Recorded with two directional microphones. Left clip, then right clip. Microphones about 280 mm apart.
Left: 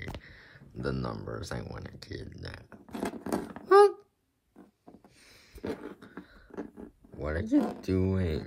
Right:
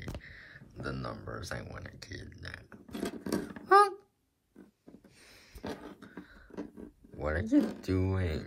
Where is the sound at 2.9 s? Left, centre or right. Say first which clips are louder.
Left 2 dB; left.